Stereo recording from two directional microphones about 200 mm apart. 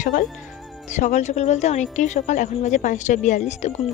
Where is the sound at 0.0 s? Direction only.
40° left (ahead or behind).